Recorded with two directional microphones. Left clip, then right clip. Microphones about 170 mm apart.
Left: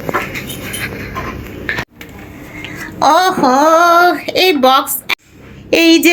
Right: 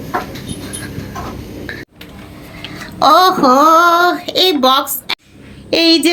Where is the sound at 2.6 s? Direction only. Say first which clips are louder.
Even; 5° right (ahead or behind).